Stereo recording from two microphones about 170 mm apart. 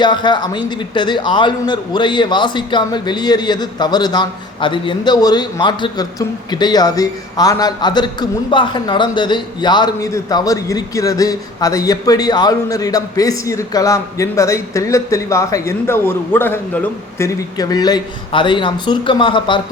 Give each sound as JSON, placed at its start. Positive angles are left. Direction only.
{"t": 0.0, "sound": "a man's voice", "side_deg": 25}